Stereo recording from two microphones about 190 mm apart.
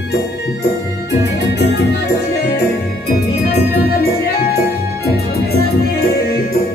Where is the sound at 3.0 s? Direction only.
55° left (ahead or behind).